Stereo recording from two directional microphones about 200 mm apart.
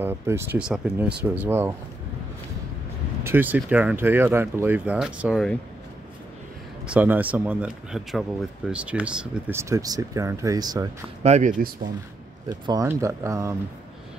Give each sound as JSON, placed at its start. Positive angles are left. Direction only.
{"t": 0.0, "sound": "speech", "side_deg": -10}
{"t": 3.3, "sound": "speech", "side_deg": -10}
{"t": 6.9, "sound": "speech", "side_deg": -10}
{"t": 11.2, "sound": "speech", "side_deg": -35}
{"t": 12.4, "sound": "speech", "side_deg": -20}